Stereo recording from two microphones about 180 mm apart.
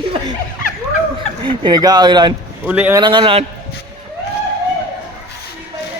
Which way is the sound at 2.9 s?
25° right (ahead or behind).